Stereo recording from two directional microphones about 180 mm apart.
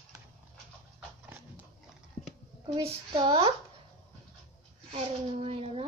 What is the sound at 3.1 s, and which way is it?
Speech, 30° right (ahead or behind).